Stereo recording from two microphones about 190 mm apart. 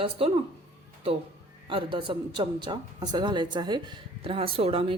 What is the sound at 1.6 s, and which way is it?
A woman's voice, 25° right (ahead or behind).